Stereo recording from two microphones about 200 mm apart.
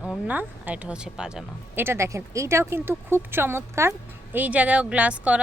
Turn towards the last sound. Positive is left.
turn(degrees=-5)  # may be behind; listen again after turning